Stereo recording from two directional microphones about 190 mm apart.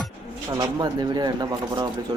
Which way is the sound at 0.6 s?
20° right (ahead or behind).